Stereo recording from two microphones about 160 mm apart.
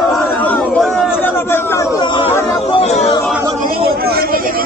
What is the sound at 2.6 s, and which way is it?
Chatter, 40° left (ahead or behind).